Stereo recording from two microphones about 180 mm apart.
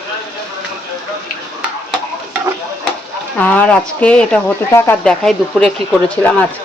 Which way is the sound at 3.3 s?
10° left (ahead or behind).